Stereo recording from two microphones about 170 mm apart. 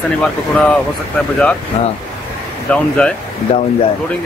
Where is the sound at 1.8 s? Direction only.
40° left (ahead or behind).